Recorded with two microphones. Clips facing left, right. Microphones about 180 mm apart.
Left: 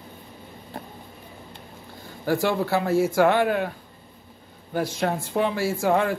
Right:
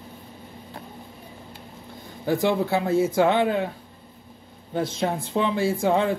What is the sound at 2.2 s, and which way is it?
Speech, 20° right (ahead or behind).